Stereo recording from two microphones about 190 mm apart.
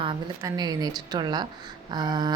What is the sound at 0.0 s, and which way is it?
Speech, 25° right (ahead or behind).